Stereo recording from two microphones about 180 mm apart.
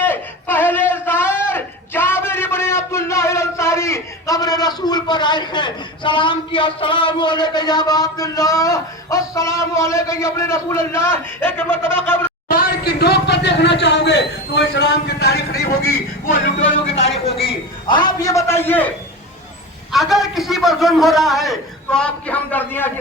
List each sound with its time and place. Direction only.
0.0 s a sound: 10° left (ahead or behind)
12.0 s speech: 10° left (ahead or behind)
12.5 s speech: 55° left (ahead or behind)
17.2 s a man's voice: 30° left (ahead or behind); by 18.9 s 10° left (ahead or behind)
19.9 s a man's voice: centre (ahead or behind)